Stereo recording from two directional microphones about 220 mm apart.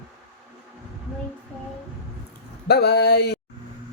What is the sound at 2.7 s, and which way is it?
Speech, 50° left (ahead or behind).